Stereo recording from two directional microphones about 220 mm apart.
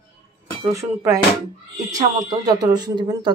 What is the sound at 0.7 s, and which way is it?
Speech, 15° right (ahead or behind).